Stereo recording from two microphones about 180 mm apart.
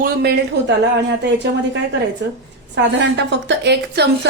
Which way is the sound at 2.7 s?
80° right.